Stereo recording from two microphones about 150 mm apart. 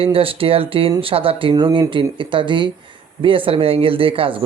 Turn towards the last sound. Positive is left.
turn(degrees=-35)  # may be behind; listen again after turning